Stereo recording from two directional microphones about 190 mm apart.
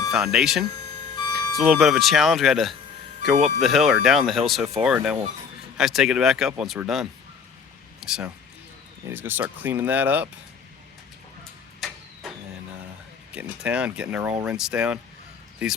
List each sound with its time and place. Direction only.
0.1 s speech: 5° right (ahead or behind)
1.0 s music: 20° left (ahead or behind)
1.5 s speech: centre (ahead or behind)
11.8 s a sound: centre (ahead or behind)
13.3 s speech: 5° right (ahead or behind)